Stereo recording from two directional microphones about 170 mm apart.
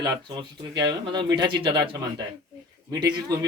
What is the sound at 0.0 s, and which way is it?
Speech, 25° right (ahead or behind).